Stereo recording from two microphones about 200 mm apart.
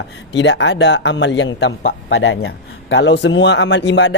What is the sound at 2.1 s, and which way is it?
Speech, 75° left (ahead or behind).